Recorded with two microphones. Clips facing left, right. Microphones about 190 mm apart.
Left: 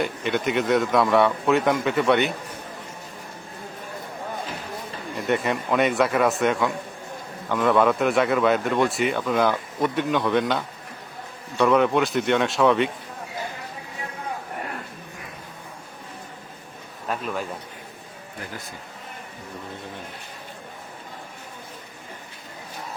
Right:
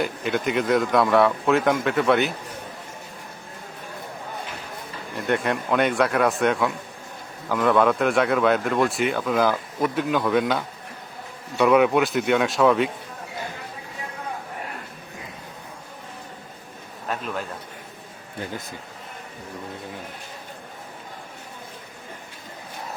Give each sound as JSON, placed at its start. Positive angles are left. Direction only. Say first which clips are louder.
{"t": 0.0, "sound": "speech", "louder": "even", "side_deg": 0}
{"t": 5.1, "sound": "speech", "louder": "even", "side_deg": 0}
{"t": 17.1, "sound": "speech", "louder": "left 1 dB", "side_deg": 0}